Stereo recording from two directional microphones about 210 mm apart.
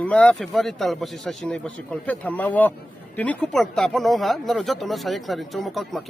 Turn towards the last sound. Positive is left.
turn(degrees=0)  # may be behind; listen again after turning